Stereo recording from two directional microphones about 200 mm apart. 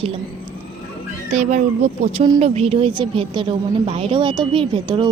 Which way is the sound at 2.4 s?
30° right (ahead or behind).